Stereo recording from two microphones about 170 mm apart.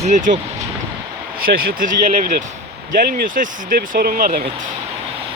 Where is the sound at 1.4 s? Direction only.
60° right (ahead or behind).